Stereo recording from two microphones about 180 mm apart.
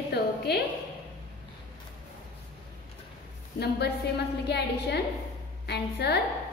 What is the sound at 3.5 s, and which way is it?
Speech, 65° left (ahead or behind).